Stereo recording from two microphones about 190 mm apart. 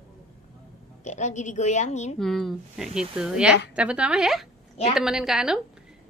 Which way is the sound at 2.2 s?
Centre (ahead or behind).